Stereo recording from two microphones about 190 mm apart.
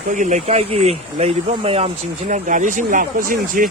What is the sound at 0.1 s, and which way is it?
Speech, 40° right (ahead or behind).